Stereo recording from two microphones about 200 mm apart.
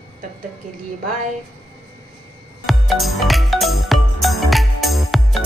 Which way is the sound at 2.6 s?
Centre (ahead or behind).